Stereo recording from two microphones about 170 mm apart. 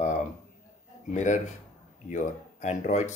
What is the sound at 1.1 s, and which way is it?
Speech, 45° left (ahead or behind).